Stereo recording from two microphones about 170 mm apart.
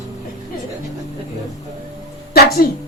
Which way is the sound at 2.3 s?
65° left (ahead or behind).